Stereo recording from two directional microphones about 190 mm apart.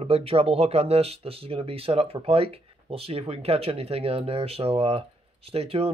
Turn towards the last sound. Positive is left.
turn(degrees=-30)  # may be behind; listen again after turning